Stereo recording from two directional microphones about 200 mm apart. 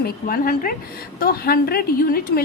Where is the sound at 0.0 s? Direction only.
45° left (ahead or behind).